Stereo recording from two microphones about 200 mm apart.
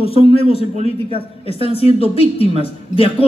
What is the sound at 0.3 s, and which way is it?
A woman's voice, 30° left (ahead or behind).